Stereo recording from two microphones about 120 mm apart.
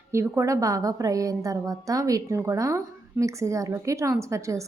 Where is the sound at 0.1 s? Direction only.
25° right (ahead or behind).